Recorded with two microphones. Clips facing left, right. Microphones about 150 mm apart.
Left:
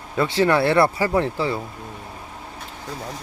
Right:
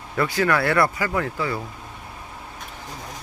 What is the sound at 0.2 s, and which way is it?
Speech, 25° left (ahead or behind).